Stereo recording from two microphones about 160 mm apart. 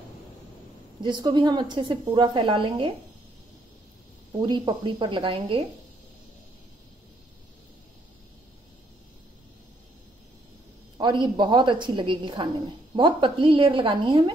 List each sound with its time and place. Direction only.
1.0 s a woman's voice: 30° right (ahead or behind)
4.3 s a woman's voice: 30° right (ahead or behind)
11.0 s a woman's voice: 30° right (ahead or behind)